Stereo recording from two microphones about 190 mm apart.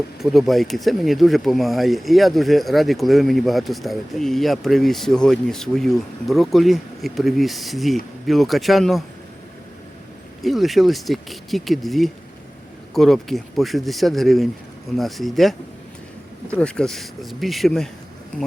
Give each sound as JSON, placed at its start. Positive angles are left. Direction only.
{"t": 0.2, "sound": "speech", "side_deg": 0}
{"t": 10.4, "sound": "speech", "side_deg": 0}
{"t": 16.6, "sound": "speech", "side_deg": 5}